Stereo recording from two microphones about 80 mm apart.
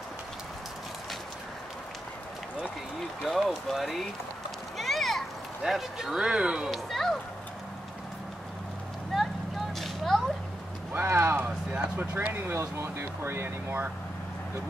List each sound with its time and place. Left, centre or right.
3.3 s speech: centre
4.7 s a sound: centre
6.7 s speech: centre
9.1 s vehicle: centre
9.8 s a sound: centre
10.9 s speech: right
12.0 s speech: centre